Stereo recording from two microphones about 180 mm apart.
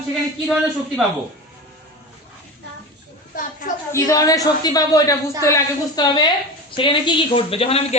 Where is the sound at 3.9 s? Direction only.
20° left (ahead or behind).